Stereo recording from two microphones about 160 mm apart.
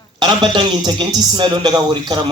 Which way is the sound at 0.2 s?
30° right (ahead or behind).